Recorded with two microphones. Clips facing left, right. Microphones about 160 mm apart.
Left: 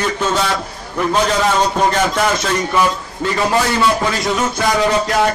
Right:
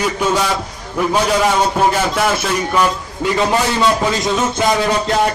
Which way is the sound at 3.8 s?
20° right (ahead or behind).